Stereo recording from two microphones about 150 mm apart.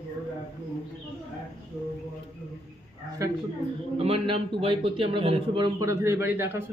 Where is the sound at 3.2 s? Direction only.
20° right (ahead or behind).